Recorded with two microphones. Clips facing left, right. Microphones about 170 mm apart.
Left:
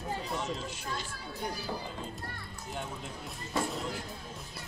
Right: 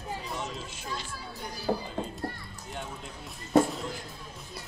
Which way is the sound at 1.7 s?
55° right (ahead or behind).